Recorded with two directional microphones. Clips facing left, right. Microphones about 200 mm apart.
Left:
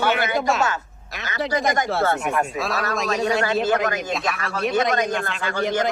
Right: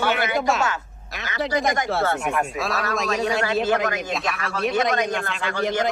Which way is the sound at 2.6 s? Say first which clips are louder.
Even; centre (ahead or behind).